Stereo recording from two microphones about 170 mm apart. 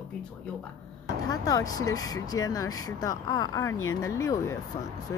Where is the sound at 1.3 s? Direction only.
20° left (ahead or behind).